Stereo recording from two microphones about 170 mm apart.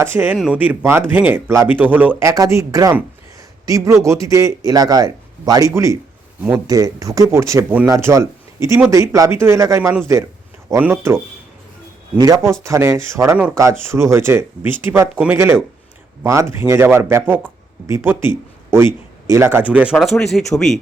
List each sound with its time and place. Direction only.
0.0 s a man's voice: 10° right (ahead or behind)